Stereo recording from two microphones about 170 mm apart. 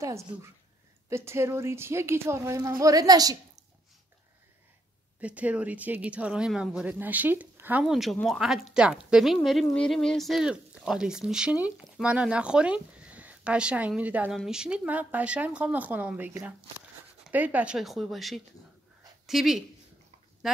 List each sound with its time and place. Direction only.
0.0 s a woman's voice: 15° right (ahead or behind)
5.2 s speech: 10° right (ahead or behind)
17.3 s speech: 10° right (ahead or behind)